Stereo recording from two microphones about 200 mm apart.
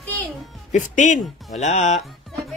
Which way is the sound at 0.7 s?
40° left (ahead or behind).